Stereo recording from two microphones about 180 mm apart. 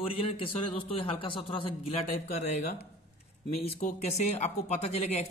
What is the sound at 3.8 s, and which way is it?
Speech, 45° left (ahead or behind).